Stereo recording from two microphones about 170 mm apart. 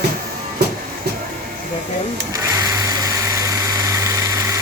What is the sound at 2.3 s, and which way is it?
Engine, 20° right (ahead or behind).